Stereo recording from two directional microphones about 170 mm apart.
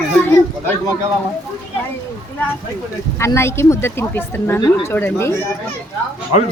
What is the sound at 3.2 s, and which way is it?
Speech, 15° left (ahead or behind).